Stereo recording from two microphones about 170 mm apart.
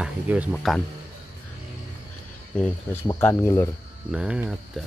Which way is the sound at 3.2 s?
15° left (ahead or behind).